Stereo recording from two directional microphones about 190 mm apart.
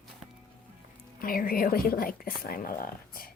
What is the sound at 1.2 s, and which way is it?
A woman's voice, 50° left (ahead or behind).